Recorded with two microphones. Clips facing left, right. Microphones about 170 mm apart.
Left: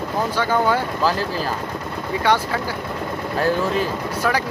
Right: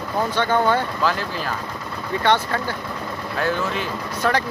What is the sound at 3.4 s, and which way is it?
Speech, 35° left (ahead or behind).